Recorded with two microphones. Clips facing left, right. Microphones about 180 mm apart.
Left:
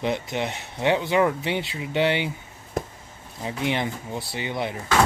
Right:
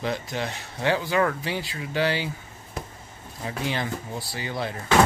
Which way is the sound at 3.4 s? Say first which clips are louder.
Left 3 dB; 20° left (ahead or behind).